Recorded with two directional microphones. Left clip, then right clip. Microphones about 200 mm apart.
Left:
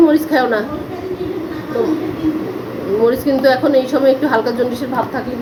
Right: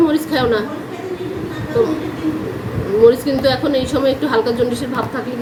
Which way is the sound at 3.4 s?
Centre (ahead or behind).